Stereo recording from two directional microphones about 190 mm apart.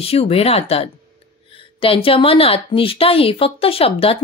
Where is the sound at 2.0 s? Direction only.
30° left (ahead or behind).